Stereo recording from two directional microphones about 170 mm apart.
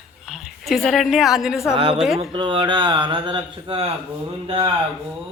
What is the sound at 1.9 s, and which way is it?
Speech, centre (ahead or behind).